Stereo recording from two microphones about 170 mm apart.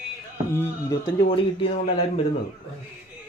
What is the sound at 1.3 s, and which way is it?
Speech, 35° left (ahead or behind).